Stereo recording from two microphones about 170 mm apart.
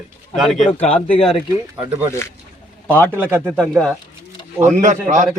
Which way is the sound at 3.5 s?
5° left (ahead or behind).